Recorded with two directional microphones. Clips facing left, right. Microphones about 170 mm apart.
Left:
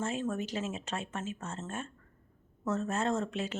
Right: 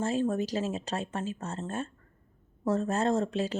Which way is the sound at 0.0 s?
35° right (ahead or behind).